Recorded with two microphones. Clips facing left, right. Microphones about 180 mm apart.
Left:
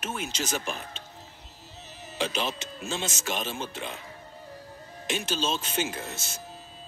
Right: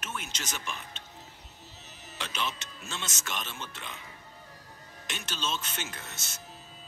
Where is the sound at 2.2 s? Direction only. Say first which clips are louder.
Left 6 dB; 30° left (ahead or behind).